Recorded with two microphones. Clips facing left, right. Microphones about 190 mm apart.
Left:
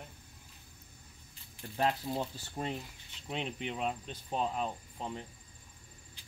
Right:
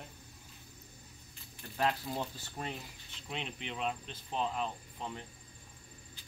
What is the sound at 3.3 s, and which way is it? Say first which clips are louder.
Speech: left 4 dB; 40° left (ahead or behind).